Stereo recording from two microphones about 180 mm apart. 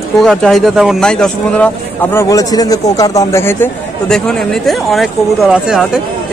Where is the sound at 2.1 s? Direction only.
20° left (ahead or behind).